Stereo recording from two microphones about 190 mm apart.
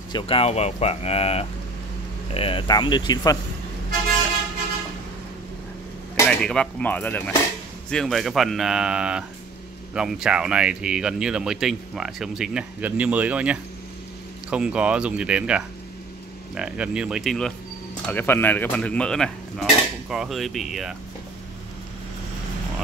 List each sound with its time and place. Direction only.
0.1 s speech: 30° left (ahead or behind)
6.2 s speech: 5° left (ahead or behind)